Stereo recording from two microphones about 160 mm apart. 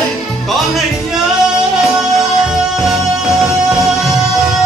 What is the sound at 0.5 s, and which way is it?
Music, centre (ahead or behind).